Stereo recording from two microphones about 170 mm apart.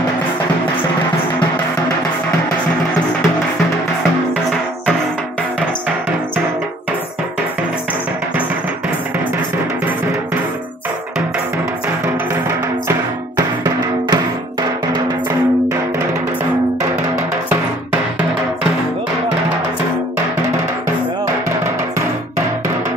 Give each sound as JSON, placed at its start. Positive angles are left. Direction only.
{"t": 13.4, "sound": "music", "side_deg": -25}